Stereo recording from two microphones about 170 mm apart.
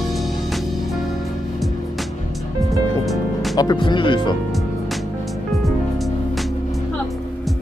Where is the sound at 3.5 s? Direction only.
25° left (ahead or behind).